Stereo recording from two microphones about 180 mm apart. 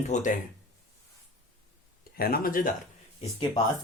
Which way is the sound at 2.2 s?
55° left (ahead or behind).